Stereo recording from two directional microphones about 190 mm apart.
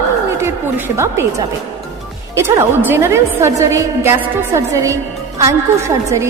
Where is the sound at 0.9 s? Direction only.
15° right (ahead or behind).